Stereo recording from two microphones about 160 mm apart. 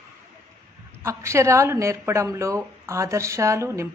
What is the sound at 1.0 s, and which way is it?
Speech, 15° right (ahead or behind).